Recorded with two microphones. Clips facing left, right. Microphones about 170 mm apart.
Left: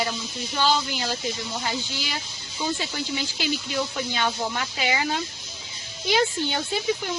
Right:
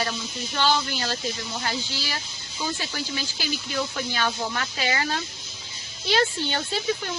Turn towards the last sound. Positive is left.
turn(degrees=10)  # may be behind; listen again after turning